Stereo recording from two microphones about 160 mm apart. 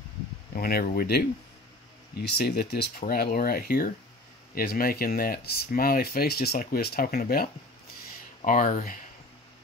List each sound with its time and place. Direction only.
0.6 s speech: 70° left (ahead or behind)
2.2 s speech: 80° left
8.5 s speech: 55° left (ahead or behind)